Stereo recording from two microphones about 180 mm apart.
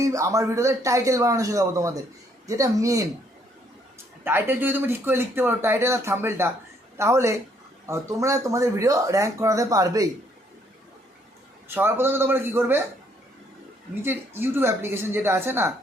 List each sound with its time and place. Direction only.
0.0 s speech: 20° right (ahead or behind)
4.2 s speech: 10° right (ahead or behind)
11.7 s speech: 10° right (ahead or behind)
14.0 s speech: 10° right (ahead or behind)